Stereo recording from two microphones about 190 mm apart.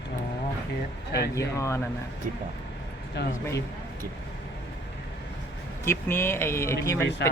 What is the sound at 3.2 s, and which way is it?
Speech, 65° left (ahead or behind).